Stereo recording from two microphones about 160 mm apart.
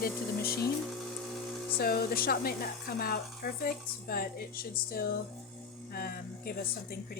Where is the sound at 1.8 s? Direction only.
70° left (ahead or behind).